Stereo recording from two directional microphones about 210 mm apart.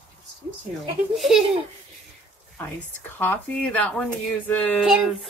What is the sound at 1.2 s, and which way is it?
Speech, centre (ahead or behind).